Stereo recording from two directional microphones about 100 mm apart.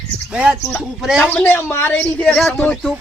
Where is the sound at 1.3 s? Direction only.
20° left (ahead or behind).